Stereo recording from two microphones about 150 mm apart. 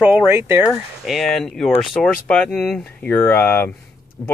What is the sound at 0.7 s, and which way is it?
Speech, centre (ahead or behind).